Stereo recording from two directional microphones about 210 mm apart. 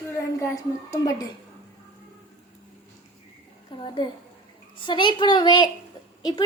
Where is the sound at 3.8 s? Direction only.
25° left (ahead or behind).